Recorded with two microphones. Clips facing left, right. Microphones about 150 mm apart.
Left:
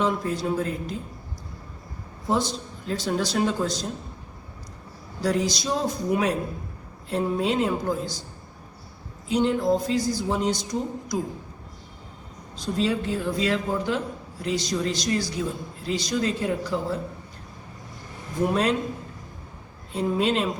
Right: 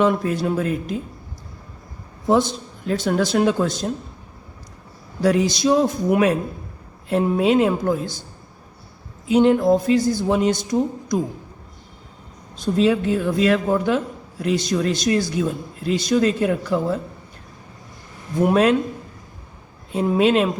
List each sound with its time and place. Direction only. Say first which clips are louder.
0.0 s speech: right 6 dB; 65° right (ahead or behind)
2.2 s speech: right 7 dB; 60° right (ahead or behind)
5.2 s speech: right 7 dB; 65° right (ahead or behind)
9.3 s speech: right 7 dB; 60° right (ahead or behind)
12.6 s speech: right 7 dB; 55° right (ahead or behind)
18.4 s speech: right 7 dB; 60° right (ahead or behind)
19.9 s a woman's voice: right 6 dB; 65° right (ahead or behind)